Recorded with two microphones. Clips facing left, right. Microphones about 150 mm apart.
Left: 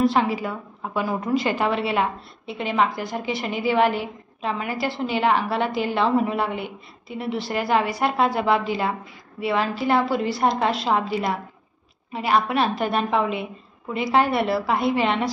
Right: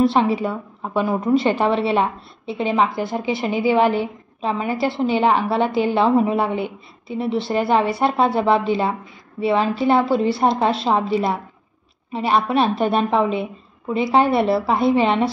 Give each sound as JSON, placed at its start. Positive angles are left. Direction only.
{"t": 0.0, "sound": "a woman's voice", "side_deg": -25}